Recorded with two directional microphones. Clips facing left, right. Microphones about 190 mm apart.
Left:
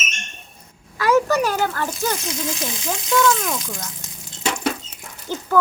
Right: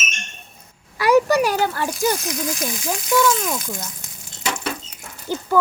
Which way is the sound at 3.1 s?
20° right (ahead or behind).